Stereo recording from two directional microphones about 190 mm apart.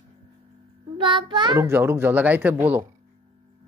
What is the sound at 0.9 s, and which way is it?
Child singing, 25° right (ahead or behind).